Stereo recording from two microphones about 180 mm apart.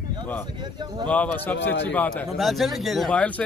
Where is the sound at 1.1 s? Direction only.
10° left (ahead or behind).